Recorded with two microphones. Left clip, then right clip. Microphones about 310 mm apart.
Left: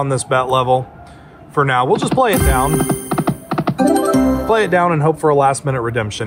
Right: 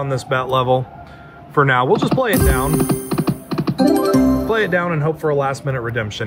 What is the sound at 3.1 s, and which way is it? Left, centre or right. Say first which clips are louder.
Music: left 3 dB; centre.